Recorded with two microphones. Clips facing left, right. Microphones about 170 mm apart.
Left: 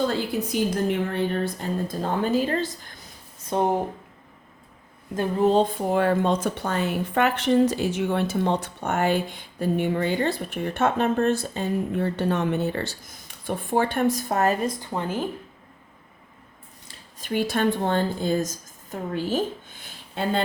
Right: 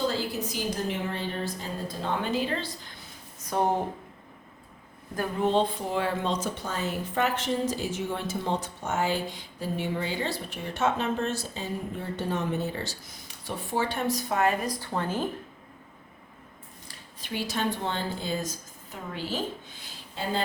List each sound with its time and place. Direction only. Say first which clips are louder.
0.1 s a woman's voice: left 5 dB; 60° left (ahead or behind)
2.0 s a woman's voice: left 4 dB; 40° left (ahead or behind)
3.5 s speech: left 3 dB; 20° left (ahead or behind)
5.4 s speech: left 5 dB; 40° left (ahead or behind)
14.7 s speech: left 2 dB; 15° left (ahead or behind)
17.2 s a woman's voice: left 7 dB; 50° left (ahead or behind)